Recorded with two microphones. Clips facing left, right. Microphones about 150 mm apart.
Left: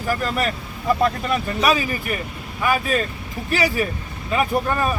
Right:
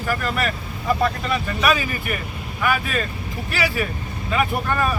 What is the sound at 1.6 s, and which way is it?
Speech, 35° left (ahead or behind).